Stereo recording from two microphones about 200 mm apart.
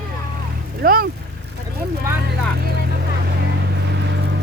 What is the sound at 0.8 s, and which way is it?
Speech, 45° right (ahead or behind).